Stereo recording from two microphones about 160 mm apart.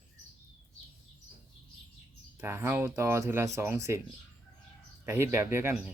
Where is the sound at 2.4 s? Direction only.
15° right (ahead or behind).